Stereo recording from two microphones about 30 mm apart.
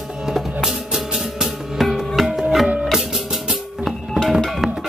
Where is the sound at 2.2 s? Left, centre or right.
Centre.